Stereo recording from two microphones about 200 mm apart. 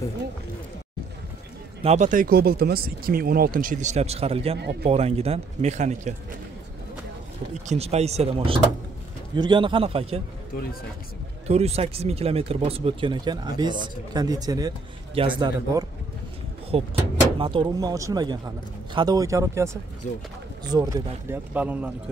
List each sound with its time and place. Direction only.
1.8 s speech: 35° right (ahead or behind)
7.6 s speech: 30° right (ahead or behind)
10.5 s speech: 45° left (ahead or behind)
11.4 s speech: 30° right (ahead or behind); by 21.9 s 10° right (ahead or behind)